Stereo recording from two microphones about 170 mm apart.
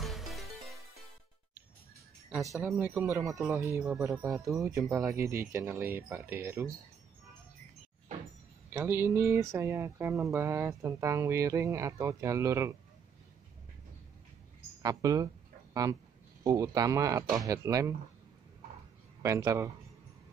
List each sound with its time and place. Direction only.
0.0 s music: centre (ahead or behind)
2.5 s speech: 15° right (ahead or behind)
8.7 s speech: 15° right (ahead or behind)
14.8 s speech: 20° right (ahead or behind)
19.2 s speech: 20° right (ahead or behind)